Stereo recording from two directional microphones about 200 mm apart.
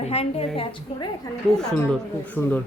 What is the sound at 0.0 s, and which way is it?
A woman's voice, 30° left (ahead or behind).